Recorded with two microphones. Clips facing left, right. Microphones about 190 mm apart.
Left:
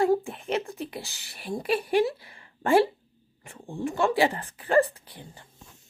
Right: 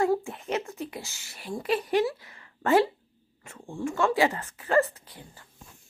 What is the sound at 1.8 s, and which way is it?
Speech, 10° left (ahead or behind).